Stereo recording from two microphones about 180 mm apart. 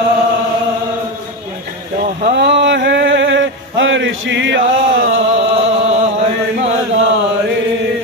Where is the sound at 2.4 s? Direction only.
75° right (ahead or behind).